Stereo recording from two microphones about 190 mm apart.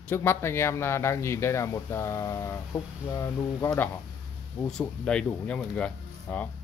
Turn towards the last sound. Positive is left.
turn(degrees=5)  # may be behind; listen again after turning